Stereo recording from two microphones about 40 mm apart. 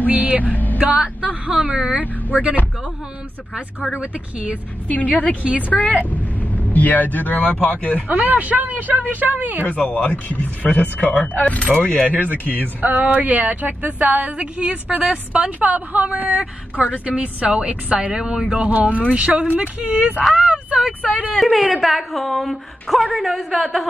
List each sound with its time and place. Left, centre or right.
0.0 s a man's voice: right
0.5 s speech: left
0.9 s speech: right
3.9 s a woman's voice: right
4.8 s a woman's voice: left
8.1 s a man's voice: right
9.7 s a woman's voice: left
12.8 s a woman's voice: right
14.3 s a woman's voice: right
18.1 s speech: right
18.7 s a woman's voice: right
20.3 s a sound: centre
21.7 s a woman's voice: centre